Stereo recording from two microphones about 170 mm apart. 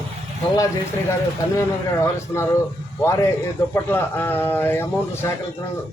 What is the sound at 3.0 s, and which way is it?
A man's voice, 15° left (ahead or behind).